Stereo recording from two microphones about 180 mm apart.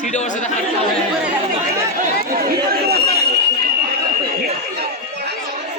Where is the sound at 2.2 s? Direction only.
60° right (ahead or behind).